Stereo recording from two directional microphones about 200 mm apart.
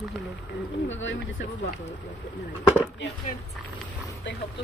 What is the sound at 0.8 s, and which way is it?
Speech, 65° left (ahead or behind).